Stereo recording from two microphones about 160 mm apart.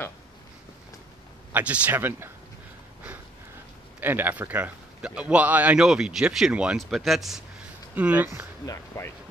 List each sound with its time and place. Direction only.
1.5 s a man's voice: 10° right (ahead or behind)
4.0 s a man's voice: 10° right (ahead or behind)
8.6 s speech: 15° left (ahead or behind)